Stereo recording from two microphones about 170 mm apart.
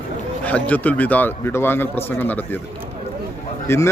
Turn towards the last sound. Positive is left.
turn(degrees=15)  # may be behind; listen again after turning